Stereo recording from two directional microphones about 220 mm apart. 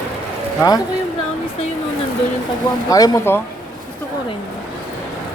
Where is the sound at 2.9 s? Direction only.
15° left (ahead or behind).